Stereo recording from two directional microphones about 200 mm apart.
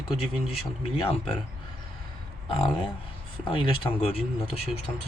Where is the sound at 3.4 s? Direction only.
25° left (ahead or behind).